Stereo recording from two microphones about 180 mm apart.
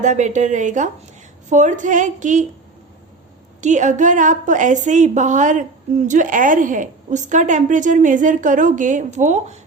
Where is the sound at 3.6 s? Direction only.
40° right (ahead or behind).